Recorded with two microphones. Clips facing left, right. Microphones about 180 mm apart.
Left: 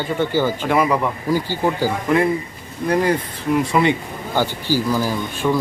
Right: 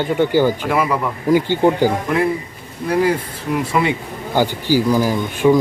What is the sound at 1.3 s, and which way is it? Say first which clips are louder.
Speech: right 8 dB; 20° right (ahead or behind).